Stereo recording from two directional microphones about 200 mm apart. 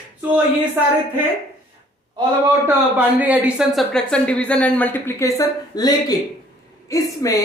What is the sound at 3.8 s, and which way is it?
Speech, 5° left (ahead or behind).